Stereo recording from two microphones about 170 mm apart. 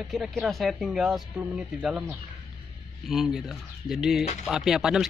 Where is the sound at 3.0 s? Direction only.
Centre (ahead or behind).